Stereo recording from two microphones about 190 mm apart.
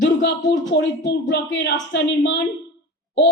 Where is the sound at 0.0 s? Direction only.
70° left (ahead or behind).